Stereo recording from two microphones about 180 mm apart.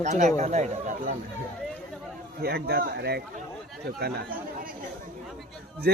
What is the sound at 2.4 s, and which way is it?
Speech, 60° right (ahead or behind).